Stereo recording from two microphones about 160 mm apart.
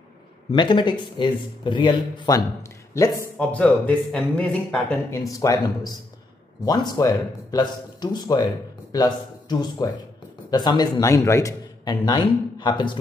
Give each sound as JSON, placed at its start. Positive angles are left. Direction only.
{"t": 0.5, "sound": "a man's voice", "side_deg": 30}
{"t": 5.3, "sound": "a man's voice", "side_deg": 20}